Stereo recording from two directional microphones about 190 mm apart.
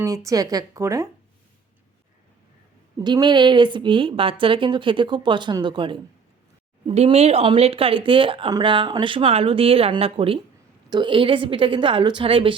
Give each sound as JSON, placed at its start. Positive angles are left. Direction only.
{"t": 0.0, "sound": "speech", "side_deg": -15}
{"t": 3.0, "sound": "speech", "side_deg": -25}